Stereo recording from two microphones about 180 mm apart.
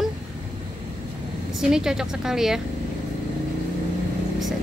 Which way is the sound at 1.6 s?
5° right (ahead or behind).